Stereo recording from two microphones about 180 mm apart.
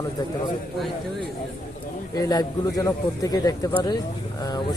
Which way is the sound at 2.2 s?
20° left (ahead or behind).